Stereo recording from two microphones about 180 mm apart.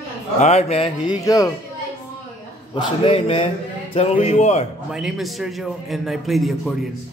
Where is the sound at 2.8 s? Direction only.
30° left (ahead or behind).